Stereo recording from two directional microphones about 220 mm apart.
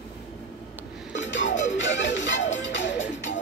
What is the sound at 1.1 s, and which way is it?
Music, 55° left (ahead or behind).